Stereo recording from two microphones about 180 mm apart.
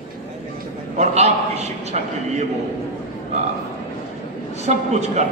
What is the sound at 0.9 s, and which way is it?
A man's voice, 35° right (ahead or behind).